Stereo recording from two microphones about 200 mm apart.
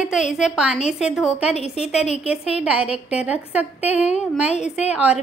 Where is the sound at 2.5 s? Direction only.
5° right (ahead or behind).